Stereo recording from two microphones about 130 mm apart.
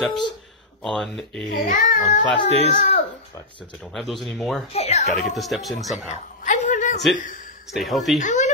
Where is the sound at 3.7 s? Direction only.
5° left (ahead or behind).